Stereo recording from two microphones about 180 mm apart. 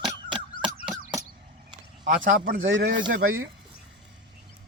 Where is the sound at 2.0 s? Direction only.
50° right (ahead or behind).